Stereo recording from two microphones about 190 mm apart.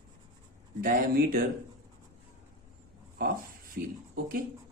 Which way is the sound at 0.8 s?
50° right (ahead or behind).